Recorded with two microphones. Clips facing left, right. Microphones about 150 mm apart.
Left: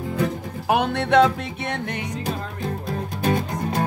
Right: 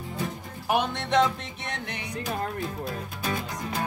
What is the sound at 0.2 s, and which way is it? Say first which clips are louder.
Music: left 8 dB; 70° left (ahead or behind).